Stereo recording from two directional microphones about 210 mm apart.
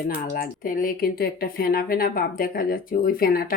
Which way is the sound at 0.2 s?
45° left (ahead or behind).